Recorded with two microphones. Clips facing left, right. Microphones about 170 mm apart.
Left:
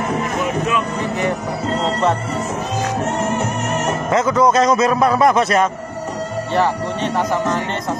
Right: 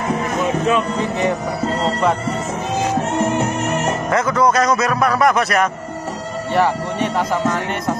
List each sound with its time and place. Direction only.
4.1 s a man's voice: 20° left (ahead or behind)
6.5 s speech: 15° right (ahead or behind)